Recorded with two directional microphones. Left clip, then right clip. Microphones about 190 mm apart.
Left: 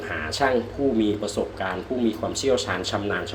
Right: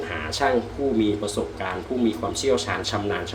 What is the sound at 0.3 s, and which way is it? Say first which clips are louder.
Speech: even; centre (ahead or behind).